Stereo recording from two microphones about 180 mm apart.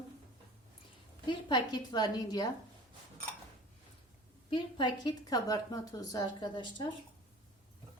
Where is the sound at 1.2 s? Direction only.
25° left (ahead or behind).